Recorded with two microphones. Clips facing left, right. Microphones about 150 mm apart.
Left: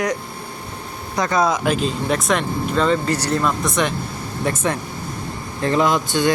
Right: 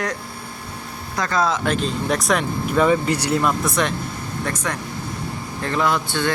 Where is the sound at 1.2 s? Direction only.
20° left (ahead or behind); by 2.4 s centre (ahead or behind).